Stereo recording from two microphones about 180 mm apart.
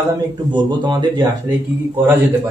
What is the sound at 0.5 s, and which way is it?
Speech, 25° right (ahead or behind).